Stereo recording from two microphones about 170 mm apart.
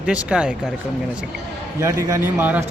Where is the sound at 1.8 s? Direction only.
15° right (ahead or behind).